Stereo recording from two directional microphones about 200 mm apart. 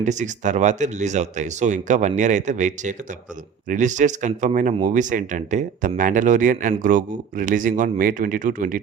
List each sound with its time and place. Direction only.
0.0 s speech: 35° right (ahead or behind)